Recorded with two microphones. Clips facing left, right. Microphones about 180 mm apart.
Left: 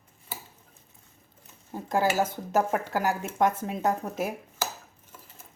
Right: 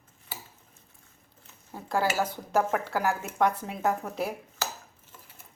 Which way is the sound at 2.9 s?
20° left (ahead or behind).